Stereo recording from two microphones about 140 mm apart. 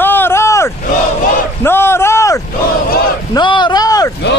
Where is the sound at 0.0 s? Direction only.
15° left (ahead or behind).